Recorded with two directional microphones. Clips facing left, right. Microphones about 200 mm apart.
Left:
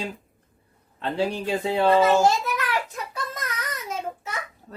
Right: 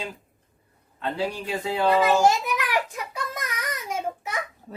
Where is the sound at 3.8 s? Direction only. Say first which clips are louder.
Right 3 dB; 15° right (ahead or behind).